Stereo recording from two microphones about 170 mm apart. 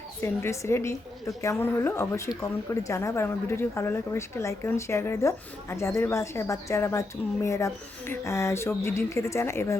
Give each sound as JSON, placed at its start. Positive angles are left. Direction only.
{"t": 0.2, "sound": "a woman's voice", "side_deg": 15}